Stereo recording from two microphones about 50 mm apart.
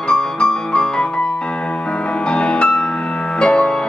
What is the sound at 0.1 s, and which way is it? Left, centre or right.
Music, centre.